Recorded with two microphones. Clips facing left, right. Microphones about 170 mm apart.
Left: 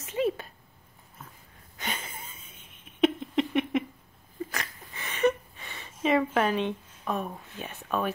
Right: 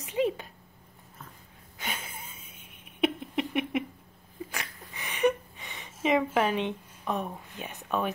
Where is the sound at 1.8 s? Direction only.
10° right (ahead or behind).